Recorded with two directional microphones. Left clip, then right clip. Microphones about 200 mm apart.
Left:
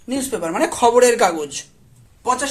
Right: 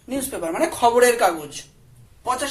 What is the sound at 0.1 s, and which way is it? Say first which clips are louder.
A woman's voice: left 4 dB; 30° left (ahead or behind).